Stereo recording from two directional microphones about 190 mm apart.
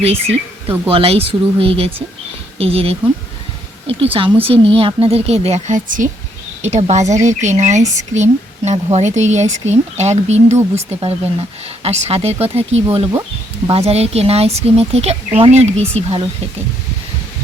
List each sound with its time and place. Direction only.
0.0 s speech: 30° right (ahead or behind)